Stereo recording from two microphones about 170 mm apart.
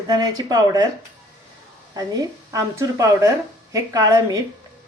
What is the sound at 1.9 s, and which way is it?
A woman's voice, 20° right (ahead or behind).